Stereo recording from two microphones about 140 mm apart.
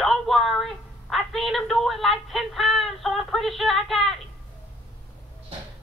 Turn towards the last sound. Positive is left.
turn(degrees=0)  # may be behind; listen again after turning